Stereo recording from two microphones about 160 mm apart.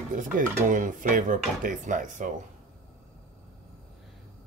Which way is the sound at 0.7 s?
55° right (ahead or behind).